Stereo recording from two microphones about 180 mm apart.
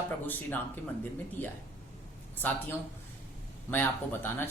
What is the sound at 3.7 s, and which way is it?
Speech, 10° left (ahead or behind).